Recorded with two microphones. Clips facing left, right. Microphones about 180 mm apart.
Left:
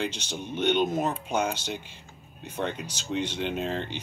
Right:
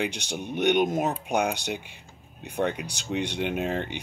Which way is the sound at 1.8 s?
70° right (ahead or behind).